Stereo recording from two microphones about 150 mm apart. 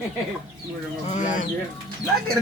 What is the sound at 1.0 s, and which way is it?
Speech, 55° left (ahead or behind).